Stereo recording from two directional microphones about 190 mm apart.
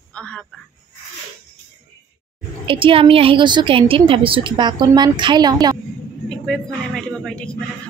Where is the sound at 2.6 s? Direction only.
30° right (ahead or behind).